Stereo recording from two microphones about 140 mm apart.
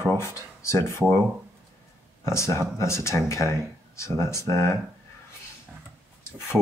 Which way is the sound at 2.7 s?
20° left (ahead or behind).